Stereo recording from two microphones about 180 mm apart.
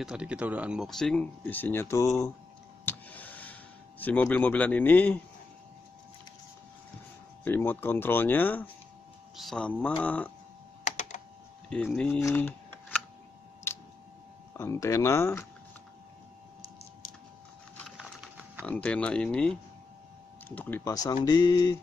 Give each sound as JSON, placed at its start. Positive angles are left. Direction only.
{"t": 0.0, "sound": "speech", "side_deg": -5}
{"t": 2.8, "sound": "a sound", "side_deg": 10}
{"t": 4.0, "sound": "a man's voice", "side_deg": 10}
{"t": 7.4, "sound": "a man's voice", "side_deg": 10}
{"t": 10.8, "sound": "typing", "side_deg": 40}
{"t": 11.7, "sound": "speech", "side_deg": 5}
{"t": 12.2, "sound": "shuffling cards", "side_deg": 15}
{"t": 13.7, "sound": "a sound", "side_deg": 15}
{"t": 14.6, "sound": "a man's voice", "side_deg": 15}
{"t": 17.7, "sound": "wood", "side_deg": 0}
{"t": 18.7, "sound": "a man's voice", "side_deg": 5}